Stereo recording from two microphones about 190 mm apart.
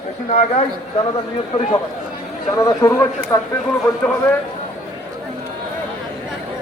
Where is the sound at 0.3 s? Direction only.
40° left (ahead or behind).